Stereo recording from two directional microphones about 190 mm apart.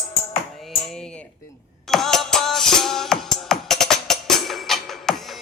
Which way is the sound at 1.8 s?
Centre (ahead or behind).